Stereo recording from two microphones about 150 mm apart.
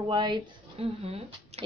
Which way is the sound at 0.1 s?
35° right (ahead or behind).